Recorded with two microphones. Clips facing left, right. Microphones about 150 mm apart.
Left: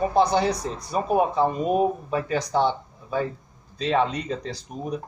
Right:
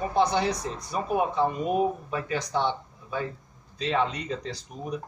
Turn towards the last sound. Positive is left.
turn(degrees=35)  # may be behind; listen again after turning